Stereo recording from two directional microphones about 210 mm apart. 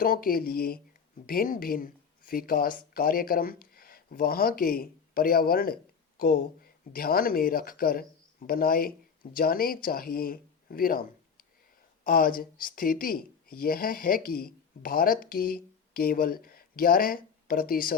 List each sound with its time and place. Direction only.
0.0 s speech: 45° left (ahead or behind)